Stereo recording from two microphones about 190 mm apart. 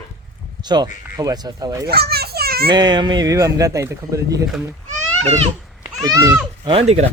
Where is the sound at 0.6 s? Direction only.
20° right (ahead or behind).